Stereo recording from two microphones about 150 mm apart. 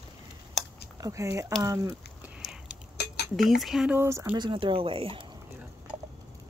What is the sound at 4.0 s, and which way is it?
Speech, 15° right (ahead or behind).